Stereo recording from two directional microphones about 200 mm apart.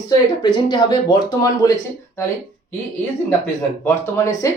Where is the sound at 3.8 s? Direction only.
15° left (ahead or behind).